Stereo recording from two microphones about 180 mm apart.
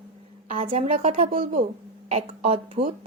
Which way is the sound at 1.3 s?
50° right (ahead or behind).